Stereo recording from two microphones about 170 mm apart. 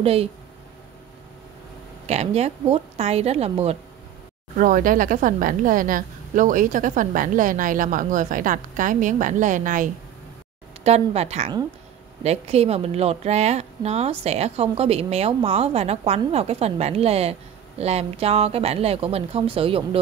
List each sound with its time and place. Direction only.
0.0 s speech: 35° right (ahead or behind)
2.0 s speech: 40° right (ahead or behind)
4.6 s a woman's voice: 55° right (ahead or behind)
10.8 s speech: 40° right (ahead or behind)